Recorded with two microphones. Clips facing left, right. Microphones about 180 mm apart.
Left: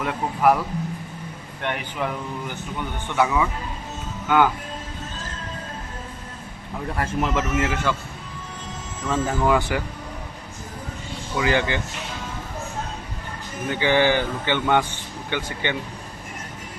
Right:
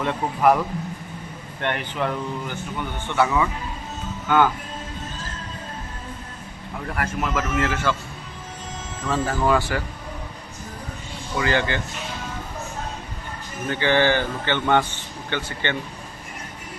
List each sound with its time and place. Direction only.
0.0 s a man's voice: 5° left (ahead or behind)
1.6 s speech: 5° left (ahead or behind)
6.9 s a man's voice: 25° left (ahead or behind)
9.0 s speech: 20° left (ahead or behind)
11.3 s speech: 15° left (ahead or behind)
13.7 s speech: 15° left (ahead or behind)